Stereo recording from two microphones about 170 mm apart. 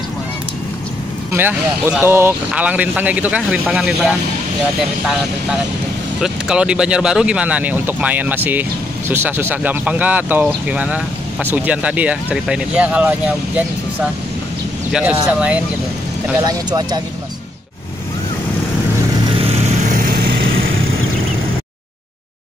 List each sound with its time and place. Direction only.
1.3 s speech: 10° right (ahead or behind)
6.2 s speech: 5° right (ahead or behind)
14.9 s speech: 5° right (ahead or behind)
16.4 s speech: 25° right (ahead or behind)
19.5 s vehicle: 50° right (ahead or behind)